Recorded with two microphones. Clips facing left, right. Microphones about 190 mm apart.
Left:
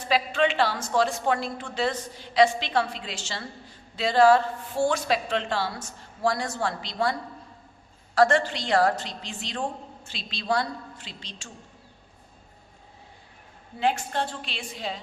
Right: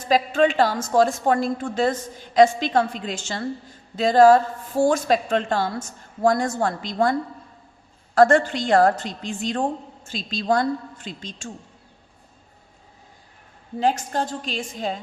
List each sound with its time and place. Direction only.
0.1 s a woman's voice: 45° right (ahead or behind)
13.7 s a woman's voice: 40° right (ahead or behind)